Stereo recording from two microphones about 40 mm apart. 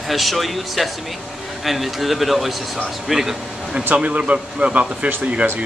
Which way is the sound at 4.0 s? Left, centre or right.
Right.